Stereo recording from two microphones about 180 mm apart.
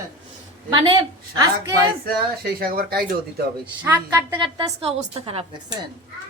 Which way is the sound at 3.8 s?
10° right (ahead or behind).